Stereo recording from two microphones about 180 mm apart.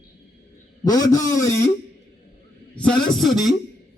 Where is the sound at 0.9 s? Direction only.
20° left (ahead or behind).